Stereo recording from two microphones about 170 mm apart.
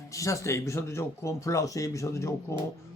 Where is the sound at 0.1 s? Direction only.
20° left (ahead or behind).